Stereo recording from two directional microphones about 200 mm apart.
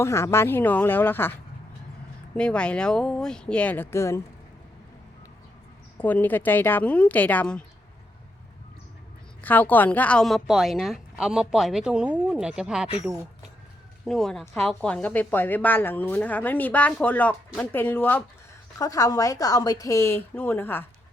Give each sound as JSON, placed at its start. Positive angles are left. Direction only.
{"t": 0.0, "sound": "a woman's voice", "side_deg": 15}
{"t": 2.3, "sound": "a woman's voice", "side_deg": 5}
{"t": 6.0, "sound": "a woman's voice", "side_deg": 10}
{"t": 9.4, "sound": "a woman's voice", "side_deg": 10}
{"t": 14.0, "sound": "a woman's voice", "side_deg": 0}